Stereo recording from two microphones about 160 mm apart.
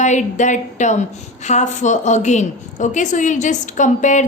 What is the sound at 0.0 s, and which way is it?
A woman's voice, 50° left (ahead or behind).